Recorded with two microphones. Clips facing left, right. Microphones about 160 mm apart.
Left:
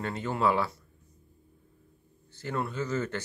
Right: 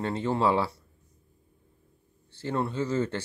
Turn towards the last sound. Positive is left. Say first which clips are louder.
# right 3 dB
turn(degrees=-30)  # may be behind; listen again after turning